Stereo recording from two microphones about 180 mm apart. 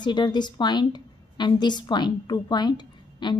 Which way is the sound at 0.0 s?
25° left (ahead or behind).